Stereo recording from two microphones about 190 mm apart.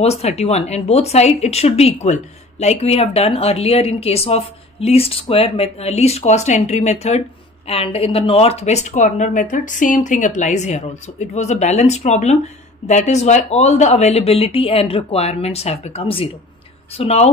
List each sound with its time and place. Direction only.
0.0 s a woman's voice: 35° left (ahead or behind)